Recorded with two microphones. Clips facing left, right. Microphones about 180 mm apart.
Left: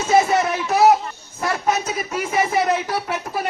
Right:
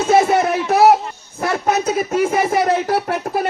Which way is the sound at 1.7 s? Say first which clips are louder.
Right 6 dB; 60° right (ahead or behind).